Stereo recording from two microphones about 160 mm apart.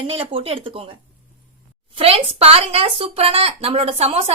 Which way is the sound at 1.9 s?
40° right (ahead or behind).